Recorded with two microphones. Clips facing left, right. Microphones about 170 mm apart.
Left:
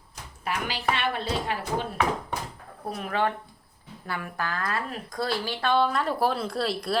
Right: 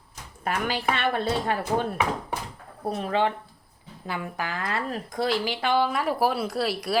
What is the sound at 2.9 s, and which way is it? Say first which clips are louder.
Speech: right 4 dB; 35° right (ahead or behind).